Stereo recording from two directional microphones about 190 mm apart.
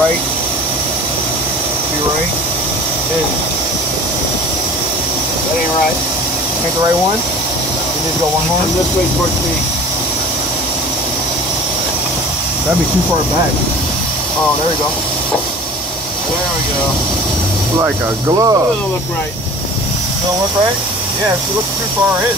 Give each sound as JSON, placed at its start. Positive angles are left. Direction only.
{"t": 18.3, "sound": "speech", "side_deg": -20}